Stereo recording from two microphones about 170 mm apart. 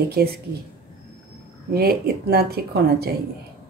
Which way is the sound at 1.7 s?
65° right (ahead or behind).